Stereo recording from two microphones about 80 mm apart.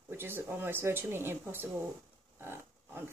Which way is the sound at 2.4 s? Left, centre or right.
Right.